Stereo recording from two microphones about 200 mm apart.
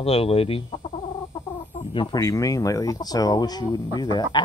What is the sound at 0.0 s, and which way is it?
Speech, 30° left (ahead or behind).